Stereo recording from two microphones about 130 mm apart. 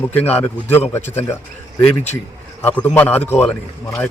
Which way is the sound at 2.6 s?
15° left (ahead or behind).